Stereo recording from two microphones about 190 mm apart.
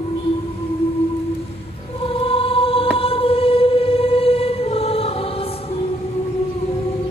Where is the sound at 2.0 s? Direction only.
30° left (ahead or behind).